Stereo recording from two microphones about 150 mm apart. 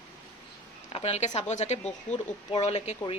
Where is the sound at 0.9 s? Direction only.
40° left (ahead or behind).